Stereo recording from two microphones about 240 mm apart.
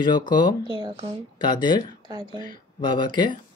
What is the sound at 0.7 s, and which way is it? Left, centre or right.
Speech, centre.